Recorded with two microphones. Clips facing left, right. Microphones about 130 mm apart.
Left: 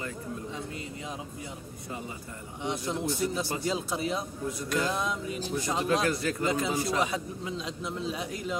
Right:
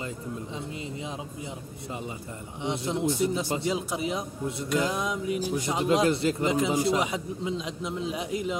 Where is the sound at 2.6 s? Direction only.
20° right (ahead or behind).